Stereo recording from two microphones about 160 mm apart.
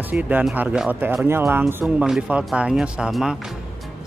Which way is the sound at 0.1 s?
10° right (ahead or behind).